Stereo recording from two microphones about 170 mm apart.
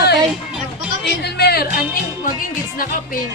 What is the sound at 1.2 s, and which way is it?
Speech, 70° left (ahead or behind).